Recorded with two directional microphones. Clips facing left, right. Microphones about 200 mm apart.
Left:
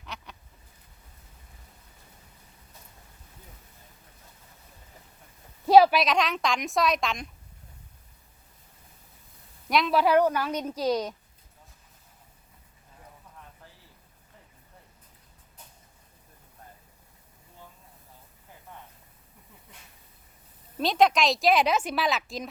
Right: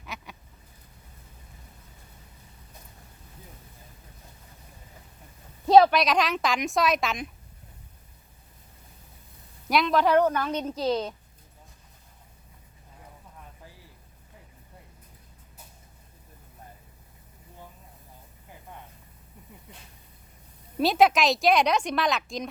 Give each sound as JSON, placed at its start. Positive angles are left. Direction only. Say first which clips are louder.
{"t": 0.0, "sound": "duck", "louder": "right 1 dB", "side_deg": -10}
{"t": 5.6, "sound": "a woman's voice", "louder": "even", "side_deg": 5}
{"t": 9.6, "sound": "a woman's voice", "louder": "right 1 dB", "side_deg": 0}
{"t": 20.7, "sound": "a woman's voice", "louder": "right 2 dB", "side_deg": -5}